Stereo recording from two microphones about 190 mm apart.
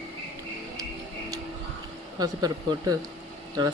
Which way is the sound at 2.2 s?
20° right (ahead or behind).